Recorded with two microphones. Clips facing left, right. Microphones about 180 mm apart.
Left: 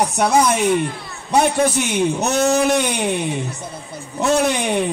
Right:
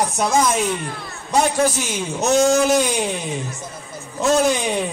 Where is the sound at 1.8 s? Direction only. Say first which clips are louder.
Left 6 dB; 60° left (ahead or behind).